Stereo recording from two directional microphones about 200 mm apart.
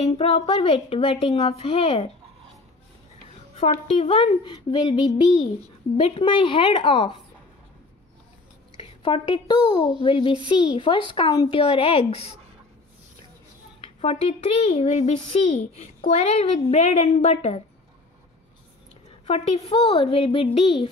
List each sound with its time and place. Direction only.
0.0 s speech: 30° left (ahead or behind)
3.8 s speech: 30° left (ahead or behind)
8.7 s a child's voice: 25° left (ahead or behind)
13.7 s speech: 30° left (ahead or behind)
19.2 s speech: 30° left (ahead or behind)